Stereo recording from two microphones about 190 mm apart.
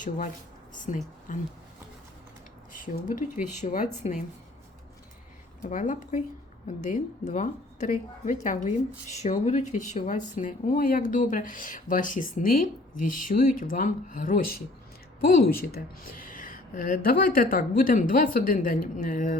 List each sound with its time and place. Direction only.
0.9 s a woman's voice: 40° left (ahead or behind)
2.8 s a woman's voice: 45° left (ahead or behind)
5.6 s a woman's voice: 40° left (ahead or behind)